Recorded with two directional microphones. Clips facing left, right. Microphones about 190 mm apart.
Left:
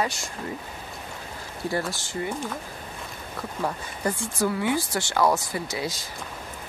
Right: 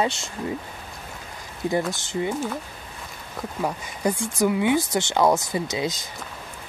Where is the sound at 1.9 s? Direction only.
20° right (ahead or behind).